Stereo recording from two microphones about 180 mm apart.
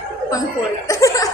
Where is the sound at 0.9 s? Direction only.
20° left (ahead or behind).